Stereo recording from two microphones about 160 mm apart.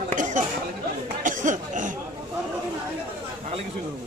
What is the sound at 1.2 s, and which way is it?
Chatter, 55° right (ahead or behind).